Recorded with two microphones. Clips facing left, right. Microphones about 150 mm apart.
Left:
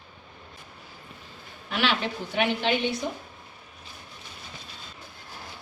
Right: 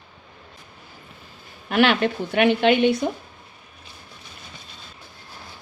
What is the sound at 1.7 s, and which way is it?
A woman's voice, 55° right (ahead or behind).